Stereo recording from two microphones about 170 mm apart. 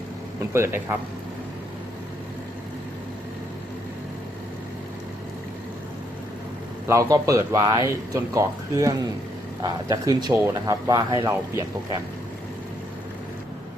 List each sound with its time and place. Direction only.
0.5 s speech: 15° right (ahead or behind)
6.8 s speech: 20° right (ahead or behind)